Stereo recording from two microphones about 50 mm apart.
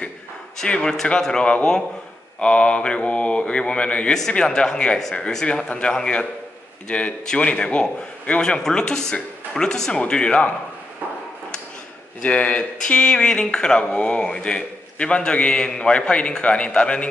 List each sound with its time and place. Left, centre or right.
0.7 s a man's voice: centre
12.2 s a man's voice: left
13.8 s a man's voice: left